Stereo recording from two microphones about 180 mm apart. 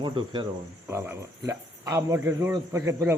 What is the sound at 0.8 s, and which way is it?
Speech, 15° right (ahead or behind).